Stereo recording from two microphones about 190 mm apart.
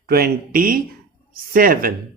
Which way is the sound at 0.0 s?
50° right (ahead or behind).